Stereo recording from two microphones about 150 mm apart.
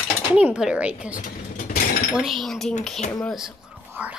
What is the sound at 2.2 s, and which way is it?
Speech, centre (ahead or behind).